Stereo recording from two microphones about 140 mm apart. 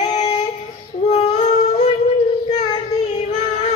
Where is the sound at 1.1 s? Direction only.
55° left (ahead or behind).